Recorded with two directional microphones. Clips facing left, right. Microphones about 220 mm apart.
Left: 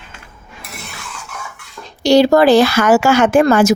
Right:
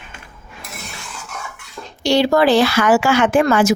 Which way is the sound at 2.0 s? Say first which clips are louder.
Left 5 dB; 40° left (ahead or behind).